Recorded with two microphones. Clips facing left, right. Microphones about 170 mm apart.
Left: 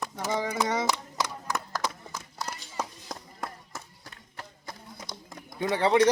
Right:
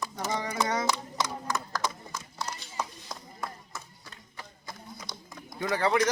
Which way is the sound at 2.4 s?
45° left (ahead or behind).